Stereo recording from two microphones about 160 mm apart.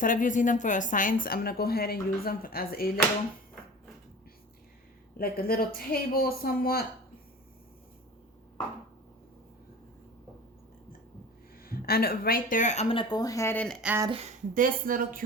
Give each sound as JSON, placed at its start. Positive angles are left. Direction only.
{"t": 0.0, "sound": "a woman's voice", "side_deg": 55}
{"t": 5.1, "sound": "speech", "side_deg": 70}
{"t": 11.6, "sound": "speech", "side_deg": 70}
{"t": 13.8, "sound": "speech", "side_deg": -15}
{"t": 14.1, "sound": "a woman's voice", "side_deg": -40}
{"t": 14.5, "sound": "a woman's voice", "side_deg": -60}